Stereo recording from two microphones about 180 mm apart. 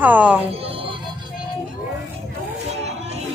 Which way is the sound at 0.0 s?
10° right (ahead or behind).